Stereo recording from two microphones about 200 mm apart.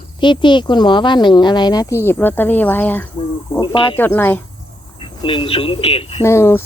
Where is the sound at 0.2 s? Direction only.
25° left (ahead or behind).